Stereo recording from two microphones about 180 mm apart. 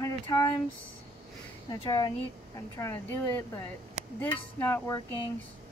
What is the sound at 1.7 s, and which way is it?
A woman's voice, 20° left (ahead or behind).